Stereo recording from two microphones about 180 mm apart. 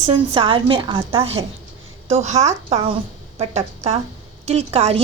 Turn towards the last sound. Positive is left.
turn(degrees=-35)  # may be behind; listen again after turning